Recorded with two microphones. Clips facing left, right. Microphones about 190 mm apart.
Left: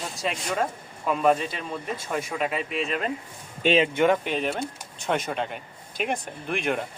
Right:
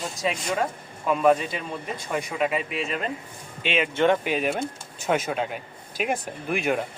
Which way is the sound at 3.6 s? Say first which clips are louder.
Left 5 dB; 35° left (ahead or behind).